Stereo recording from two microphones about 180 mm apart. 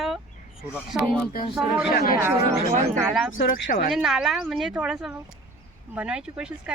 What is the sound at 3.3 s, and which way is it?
Speech, 50° left (ahead or behind).